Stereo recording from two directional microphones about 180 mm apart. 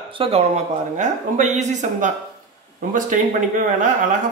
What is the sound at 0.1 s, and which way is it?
A man's voice, 30° right (ahead or behind).